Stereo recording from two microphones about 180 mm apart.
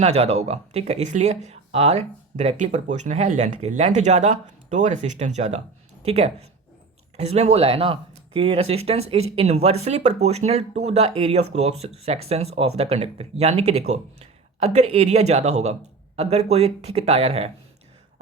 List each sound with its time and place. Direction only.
0.0 s speech: 35° right (ahead or behind)